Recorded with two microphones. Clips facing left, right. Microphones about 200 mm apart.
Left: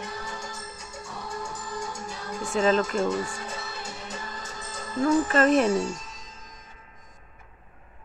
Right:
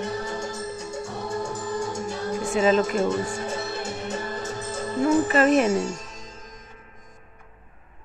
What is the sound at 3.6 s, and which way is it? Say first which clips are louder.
Music: right 8 dB; 65° right (ahead or behind).